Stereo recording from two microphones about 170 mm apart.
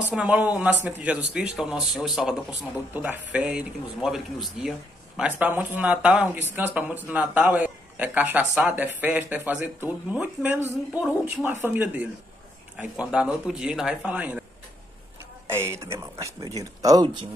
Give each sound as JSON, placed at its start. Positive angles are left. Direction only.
{"t": 0.1, "sound": "a man's voice", "side_deg": -5}
{"t": 15.5, "sound": "a man's voice", "side_deg": -15}